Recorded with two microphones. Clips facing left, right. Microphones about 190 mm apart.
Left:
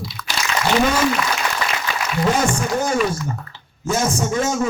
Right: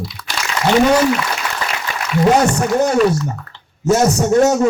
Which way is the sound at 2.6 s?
65° right (ahead or behind).